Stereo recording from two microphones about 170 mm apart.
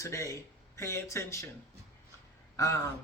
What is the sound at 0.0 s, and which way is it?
Speech, 15° left (ahead or behind).